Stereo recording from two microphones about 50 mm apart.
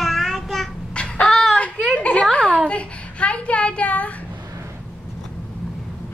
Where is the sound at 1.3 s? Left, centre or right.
Centre.